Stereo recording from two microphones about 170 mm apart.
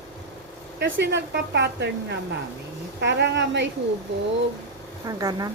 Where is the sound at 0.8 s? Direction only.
85° right.